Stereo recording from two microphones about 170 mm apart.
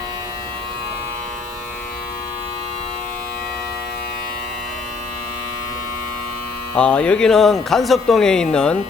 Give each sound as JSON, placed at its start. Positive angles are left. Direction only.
{"t": 6.7, "sound": "speech", "side_deg": 5}